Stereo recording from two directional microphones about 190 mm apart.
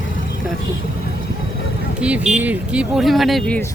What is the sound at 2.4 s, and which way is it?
Speech, 5° right (ahead or behind).